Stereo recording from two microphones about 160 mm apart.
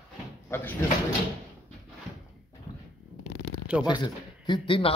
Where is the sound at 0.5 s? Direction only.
15° left (ahead or behind).